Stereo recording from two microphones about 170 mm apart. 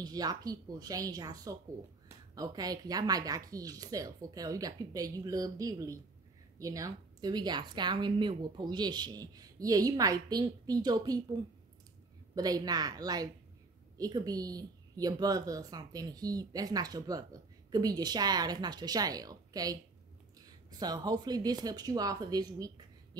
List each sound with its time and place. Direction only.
0.0 s speech: 20° right (ahead or behind)
12.4 s speech: 20° right (ahead or behind)